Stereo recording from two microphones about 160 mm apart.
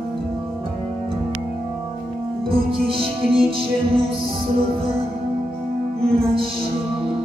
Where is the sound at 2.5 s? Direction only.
35° right (ahead or behind).